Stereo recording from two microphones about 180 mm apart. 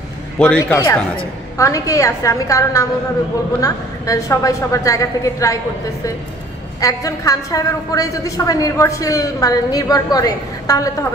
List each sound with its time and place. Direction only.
0.4 s a woman's voice: 10° left (ahead or behind)
6.8 s a woman's voice: 20° left (ahead or behind)